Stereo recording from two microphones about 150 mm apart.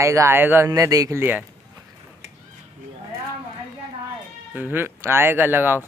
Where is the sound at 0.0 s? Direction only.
20° right (ahead or behind).